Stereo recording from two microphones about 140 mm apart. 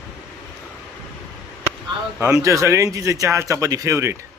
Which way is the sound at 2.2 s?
20° right (ahead or behind).